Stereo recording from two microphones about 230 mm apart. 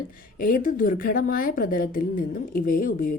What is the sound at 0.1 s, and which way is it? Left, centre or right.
Speech, left.